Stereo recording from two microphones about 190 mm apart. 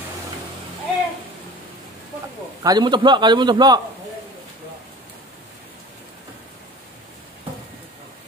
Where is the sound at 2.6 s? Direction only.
20° right (ahead or behind).